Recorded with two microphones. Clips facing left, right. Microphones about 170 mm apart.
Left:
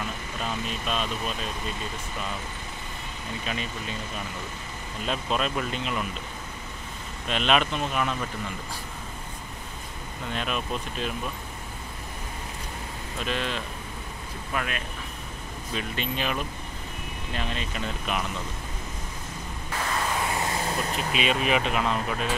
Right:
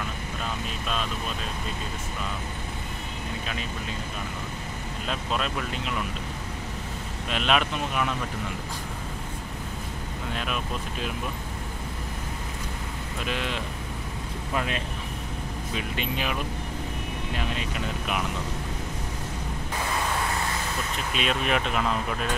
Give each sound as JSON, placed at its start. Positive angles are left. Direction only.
{"t": 5.0, "sound": "speech", "side_deg": 0}
{"t": 7.2, "sound": "speech", "side_deg": -5}
{"t": 10.3, "sound": "speech", "side_deg": -5}
{"t": 13.2, "sound": "speech", "side_deg": -10}
{"t": 14.5, "sound": "speech", "side_deg": -25}
{"t": 15.7, "sound": "speech", "side_deg": -10}
{"t": 17.4, "sound": "speech", "side_deg": -10}
{"t": 21.1, "sound": "speech", "side_deg": 5}